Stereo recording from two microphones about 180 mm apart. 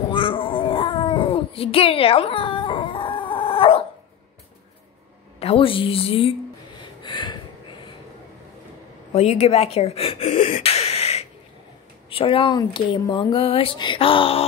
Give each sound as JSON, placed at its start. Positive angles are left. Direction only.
{"t": 0.1, "sound": "cat", "side_deg": 30}
{"t": 5.4, "sound": "a woman's voice", "side_deg": 30}
{"t": 6.8, "sound": "gasp", "side_deg": 25}
{"t": 9.1, "sound": "speech", "side_deg": 35}